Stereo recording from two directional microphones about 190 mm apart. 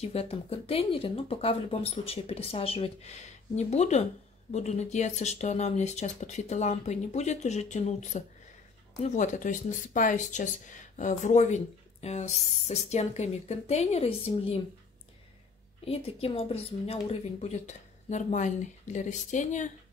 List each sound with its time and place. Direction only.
0.0 s speech: 30° left (ahead or behind)
15.8 s speech: 30° left (ahead or behind)